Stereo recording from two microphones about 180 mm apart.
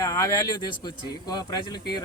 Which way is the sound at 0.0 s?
20° left (ahead or behind).